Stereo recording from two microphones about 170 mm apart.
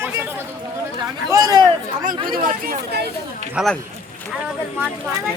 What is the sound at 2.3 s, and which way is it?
Speech, 55° right (ahead or behind).